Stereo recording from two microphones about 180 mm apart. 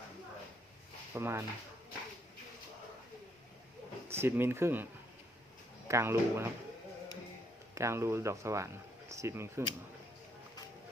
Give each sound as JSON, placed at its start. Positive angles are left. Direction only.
{"t": 1.1, "sound": "speech", "side_deg": -15}
{"t": 4.1, "sound": "speech", "side_deg": -10}
{"t": 5.9, "sound": "speech", "side_deg": -15}
{"t": 7.8, "sound": "speech", "side_deg": -15}